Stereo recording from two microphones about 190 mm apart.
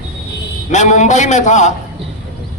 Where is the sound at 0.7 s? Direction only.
40° left (ahead or behind).